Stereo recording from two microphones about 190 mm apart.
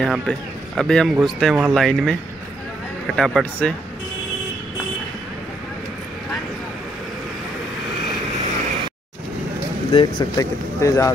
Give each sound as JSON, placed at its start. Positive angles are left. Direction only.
{"t": 0.0, "sound": "a man's voice", "side_deg": 5}
{"t": 3.2, "sound": "a man's voice", "side_deg": 0}
{"t": 9.8, "sound": "speech", "side_deg": 20}